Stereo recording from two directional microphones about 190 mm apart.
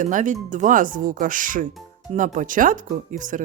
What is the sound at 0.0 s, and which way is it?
Speech, 40° right (ahead or behind).